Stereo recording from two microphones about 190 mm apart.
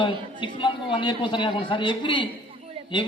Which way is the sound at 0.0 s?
25° left (ahead or behind).